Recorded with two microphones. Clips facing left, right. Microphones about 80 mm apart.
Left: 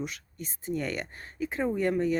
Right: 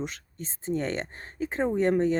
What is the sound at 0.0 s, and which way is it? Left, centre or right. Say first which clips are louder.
Speech: right 1 dB; right.